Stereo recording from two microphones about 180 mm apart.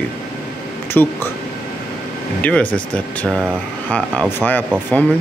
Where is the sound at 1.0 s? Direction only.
10° left (ahead or behind).